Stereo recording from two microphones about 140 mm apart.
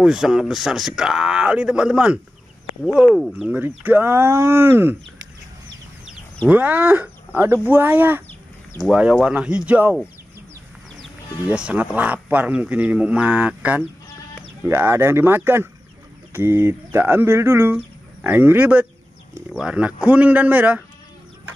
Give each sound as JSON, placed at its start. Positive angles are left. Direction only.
{"t": 0.0, "sound": "speech", "side_deg": -5}
{"t": 6.5, "sound": "speech", "side_deg": -10}
{"t": 11.0, "sound": "speech", "side_deg": -5}